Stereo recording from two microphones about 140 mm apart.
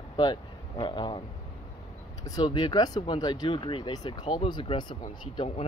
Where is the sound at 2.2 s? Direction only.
25° left (ahead or behind).